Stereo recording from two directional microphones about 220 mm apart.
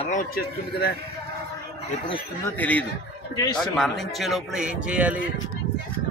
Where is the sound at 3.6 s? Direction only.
Centre (ahead or behind).